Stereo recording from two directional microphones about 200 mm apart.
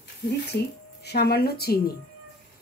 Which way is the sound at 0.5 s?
55° left (ahead or behind).